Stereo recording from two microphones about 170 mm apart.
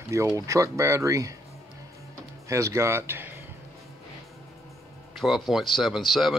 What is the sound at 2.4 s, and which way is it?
Speech, 15° right (ahead or behind).